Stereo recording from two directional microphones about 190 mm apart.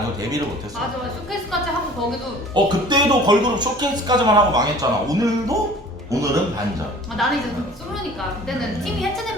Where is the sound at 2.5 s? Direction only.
20° right (ahead or behind).